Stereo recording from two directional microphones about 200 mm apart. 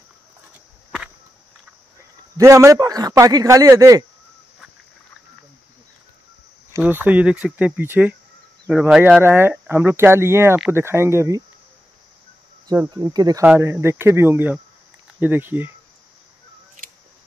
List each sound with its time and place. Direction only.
2.3 s speech: 15° right (ahead or behind)
6.7 s speech: 10° right (ahead or behind)
12.6 s speech: 15° right (ahead or behind)